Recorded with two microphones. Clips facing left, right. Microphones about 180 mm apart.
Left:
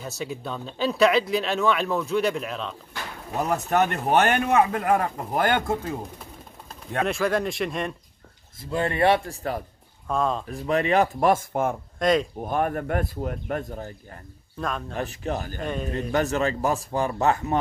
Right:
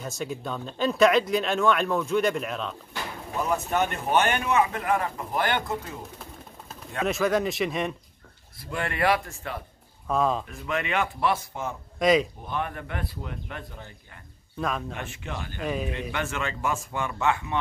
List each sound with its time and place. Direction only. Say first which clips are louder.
0.2 s speech: even; centre (ahead or behind)
3.5 s a man's voice: left 5 dB; 40° left (ahead or behind)
7.1 s speech: right 2 dB; centre (ahead or behind)
8.5 s speech: left 5 dB; 25° left (ahead or behind)
10.0 s speech: even; centre (ahead or behind)
10.4 s a man's voice: left 6 dB; 35° left (ahead or behind)
12.0 s speech: right 1 dB; centre (ahead or behind)
12.4 s a man's voice: left 7 dB; 45° left (ahead or behind)
14.6 s speech: right 1 dB; centre (ahead or behind)
15.0 s a man's voice: left 7 dB; 40° left (ahead or behind)
15.6 s speech: right 5 dB; 5° right (ahead or behind)
16.1 s a man's voice: left 7 dB; 40° left (ahead or behind)